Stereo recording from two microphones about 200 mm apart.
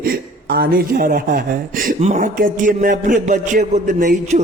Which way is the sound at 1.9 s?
35° right (ahead or behind).